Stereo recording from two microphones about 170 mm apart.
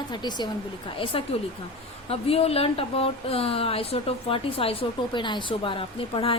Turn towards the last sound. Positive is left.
turn(degrees=30)  # may be behind; listen again after turning